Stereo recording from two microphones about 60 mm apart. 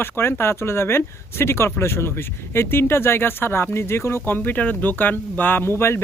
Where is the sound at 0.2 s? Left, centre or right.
Left.